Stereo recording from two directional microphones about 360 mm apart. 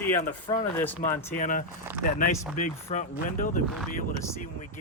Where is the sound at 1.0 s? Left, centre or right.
Left.